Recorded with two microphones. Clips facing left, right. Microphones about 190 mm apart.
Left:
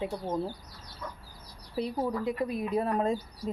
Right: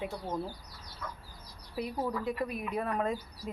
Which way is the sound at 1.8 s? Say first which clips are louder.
Left 3 dB; 30° left (ahead or behind).